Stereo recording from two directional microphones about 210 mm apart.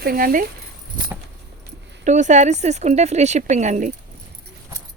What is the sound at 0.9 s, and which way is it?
Keys jangling, 40° right (ahead or behind).